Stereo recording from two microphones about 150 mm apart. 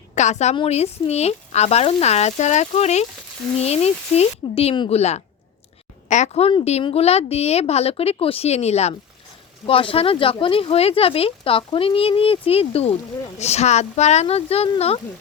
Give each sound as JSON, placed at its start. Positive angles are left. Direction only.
{"t": 0.1, "sound": "a woman's voice", "side_deg": 50}
{"t": 4.9, "sound": "a woman's voice", "side_deg": 45}